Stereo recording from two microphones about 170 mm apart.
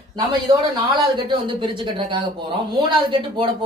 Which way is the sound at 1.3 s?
30° right (ahead or behind).